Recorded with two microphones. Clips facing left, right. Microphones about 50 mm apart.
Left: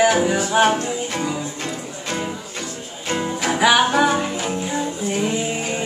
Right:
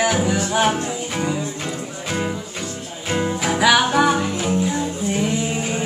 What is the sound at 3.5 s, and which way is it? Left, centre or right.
Music, centre.